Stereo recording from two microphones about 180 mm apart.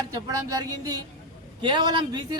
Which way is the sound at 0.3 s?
20° right (ahead or behind).